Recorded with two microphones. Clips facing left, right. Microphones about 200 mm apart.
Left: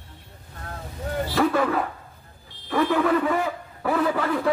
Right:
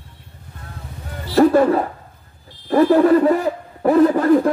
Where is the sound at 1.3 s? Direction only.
40° right (ahead or behind).